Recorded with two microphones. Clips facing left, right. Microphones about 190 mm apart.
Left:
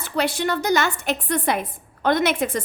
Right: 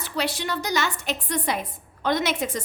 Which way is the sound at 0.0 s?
50° left (ahead or behind).